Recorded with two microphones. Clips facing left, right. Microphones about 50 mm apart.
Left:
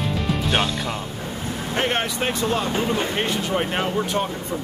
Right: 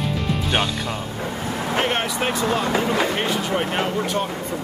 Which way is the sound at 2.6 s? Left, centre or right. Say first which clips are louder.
Right 2 dB; right.